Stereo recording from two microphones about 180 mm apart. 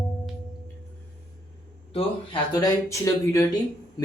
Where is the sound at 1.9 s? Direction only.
25° left (ahead or behind).